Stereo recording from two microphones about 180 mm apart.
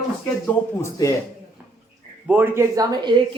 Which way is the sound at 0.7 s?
15° left (ahead or behind).